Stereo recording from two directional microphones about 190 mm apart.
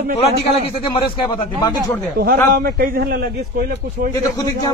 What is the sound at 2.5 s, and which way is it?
A man's voice, 50° right (ahead or behind).